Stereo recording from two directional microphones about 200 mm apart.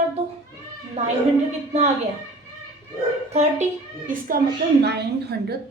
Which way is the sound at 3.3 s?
35° right (ahead or behind).